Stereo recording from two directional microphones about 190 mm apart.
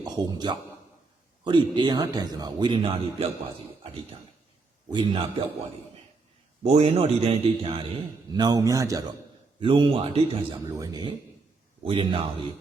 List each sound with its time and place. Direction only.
0.0 s a man's voice: 20° right (ahead or behind)
4.9 s a man's voice: 25° right (ahead or behind)
6.6 s a man's voice: 35° right (ahead or behind)